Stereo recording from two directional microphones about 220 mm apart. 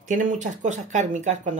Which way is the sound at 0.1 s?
35° right (ahead or behind).